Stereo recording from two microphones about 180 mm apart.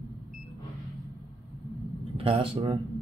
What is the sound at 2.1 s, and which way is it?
Speech, 30° right (ahead or behind).